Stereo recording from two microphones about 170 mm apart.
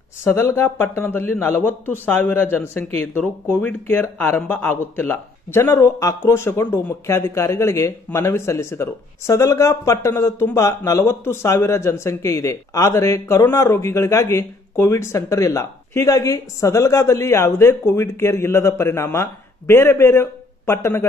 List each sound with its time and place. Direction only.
0.2 s speech: 15° left (ahead or behind)